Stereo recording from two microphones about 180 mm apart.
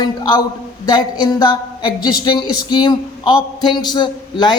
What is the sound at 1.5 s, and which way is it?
Speech, 25° left (ahead or behind).